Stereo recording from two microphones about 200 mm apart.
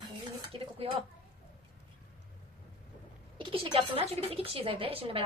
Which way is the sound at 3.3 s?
25° right (ahead or behind).